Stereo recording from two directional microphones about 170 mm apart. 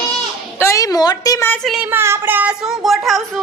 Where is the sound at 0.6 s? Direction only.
20° left (ahead or behind).